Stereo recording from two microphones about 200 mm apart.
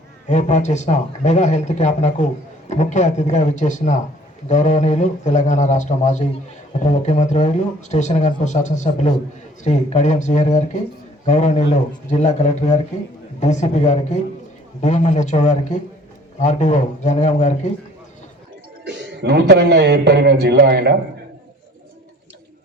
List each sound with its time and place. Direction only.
0.3 s speech: 35° left (ahead or behind)
18.9 s speech: 55° right (ahead or behind)